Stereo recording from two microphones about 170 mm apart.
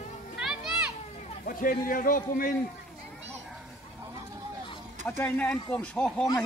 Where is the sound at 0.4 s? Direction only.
5° right (ahead or behind).